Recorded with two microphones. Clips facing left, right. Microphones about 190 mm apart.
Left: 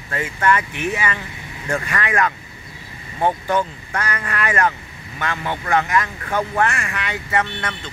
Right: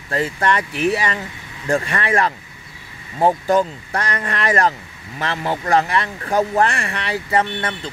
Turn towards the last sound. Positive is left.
turn(degrees=-30)  # may be behind; listen again after turning